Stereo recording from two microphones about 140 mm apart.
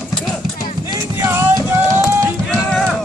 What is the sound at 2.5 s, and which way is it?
Music, 5° left (ahead or behind).